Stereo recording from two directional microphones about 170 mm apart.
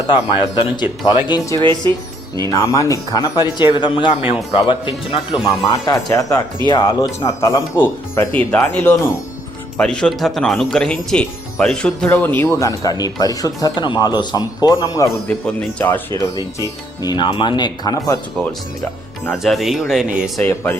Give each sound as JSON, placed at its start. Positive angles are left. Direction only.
{"t": 0.5, "sound": "speech", "side_deg": 25}
{"t": 1.5, "sound": "speech", "side_deg": -25}
{"t": 2.5, "sound": "speech", "side_deg": 20}
{"t": 15.4, "sound": "speech", "side_deg": 10}
{"t": 16.1, "sound": "speech", "side_deg": 20}
{"t": 19.3, "sound": "speech", "side_deg": 0}
{"t": 20.4, "sound": "speech", "side_deg": 15}